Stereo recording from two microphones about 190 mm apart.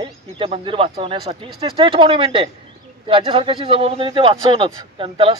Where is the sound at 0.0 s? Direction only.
25° right (ahead or behind).